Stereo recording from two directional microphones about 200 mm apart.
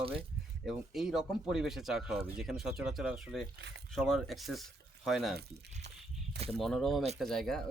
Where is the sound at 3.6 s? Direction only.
60° right (ahead or behind).